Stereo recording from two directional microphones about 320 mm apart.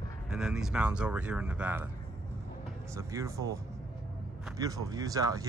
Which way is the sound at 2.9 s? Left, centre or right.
Centre.